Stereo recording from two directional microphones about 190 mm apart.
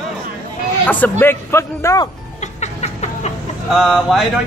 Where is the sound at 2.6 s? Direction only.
35° left (ahead or behind).